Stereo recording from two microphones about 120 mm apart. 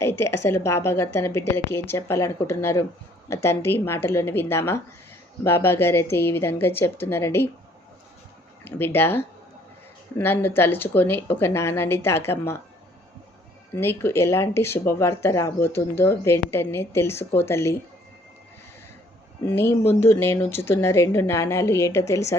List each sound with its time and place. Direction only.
0.0 s speech: 20° left (ahead or behind)
8.6 s a woman's voice: 20° left (ahead or behind)
13.7 s speech: 20° left (ahead or behind)
19.5 s speech: 20° left (ahead or behind)